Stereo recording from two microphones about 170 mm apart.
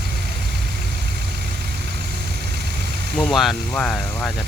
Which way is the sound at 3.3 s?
5° left (ahead or behind).